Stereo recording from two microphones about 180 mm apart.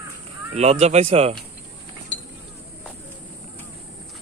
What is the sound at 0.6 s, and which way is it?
Speech, 35° right (ahead or behind).